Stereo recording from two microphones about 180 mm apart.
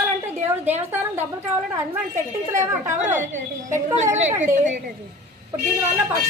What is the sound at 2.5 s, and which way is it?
Speech, 15° right (ahead or behind).